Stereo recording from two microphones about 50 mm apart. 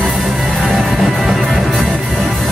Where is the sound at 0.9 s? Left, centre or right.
Centre.